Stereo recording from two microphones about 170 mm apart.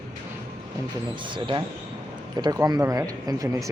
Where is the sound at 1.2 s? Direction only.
30° right (ahead or behind).